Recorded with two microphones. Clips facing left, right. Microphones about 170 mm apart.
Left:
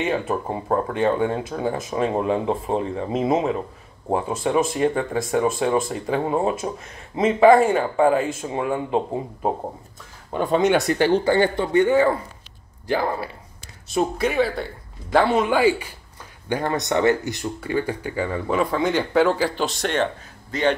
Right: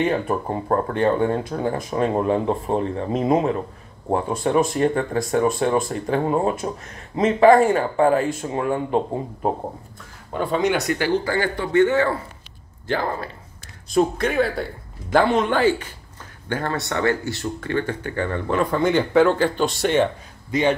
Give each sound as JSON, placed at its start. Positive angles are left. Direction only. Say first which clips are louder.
{"t": 0.5, "sound": "a man's voice", "louder": "right 1 dB", "side_deg": 10}